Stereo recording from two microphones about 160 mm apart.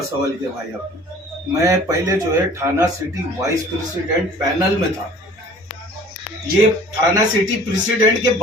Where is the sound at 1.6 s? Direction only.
20° right (ahead or behind).